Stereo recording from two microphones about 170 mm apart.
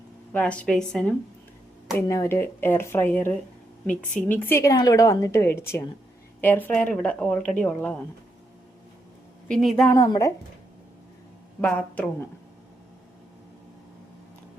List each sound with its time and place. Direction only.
0.3 s speech: 5° left (ahead or behind)
2.0 s speech: 15° left (ahead or behind)
9.5 s a woman's voice: centre (ahead or behind)
10.0 s speech: 20° left (ahead or behind)
11.6 s speech: 10° left (ahead or behind)